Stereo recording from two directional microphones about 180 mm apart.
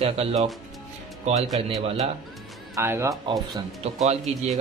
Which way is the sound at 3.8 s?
35° right (ahead or behind).